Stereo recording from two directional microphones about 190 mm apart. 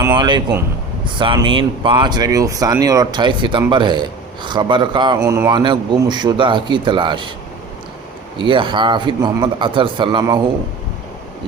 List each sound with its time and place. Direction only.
0.2 s a man's voice: 25° right (ahead or behind)
8.4 s a man's voice: 25° right (ahead or behind)